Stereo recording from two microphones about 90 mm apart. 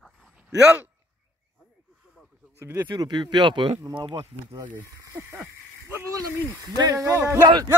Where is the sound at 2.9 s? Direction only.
50° right (ahead or behind).